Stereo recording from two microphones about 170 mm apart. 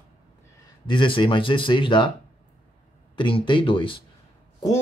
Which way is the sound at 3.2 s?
30° left (ahead or behind).